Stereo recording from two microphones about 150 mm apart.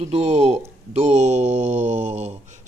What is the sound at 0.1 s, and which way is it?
Speech, 45° right (ahead or behind).